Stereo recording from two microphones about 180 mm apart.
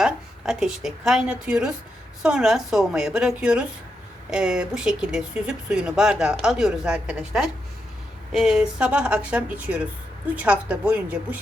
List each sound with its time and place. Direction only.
0.0 s speech: 5° right (ahead or behind)